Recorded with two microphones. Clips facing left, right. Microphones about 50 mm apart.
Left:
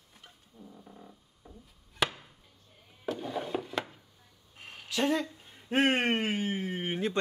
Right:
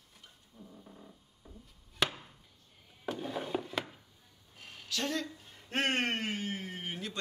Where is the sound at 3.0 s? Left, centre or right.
Centre.